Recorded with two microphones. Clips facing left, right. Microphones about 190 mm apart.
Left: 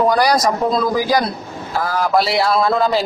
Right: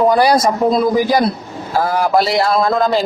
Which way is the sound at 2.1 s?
Centre (ahead or behind).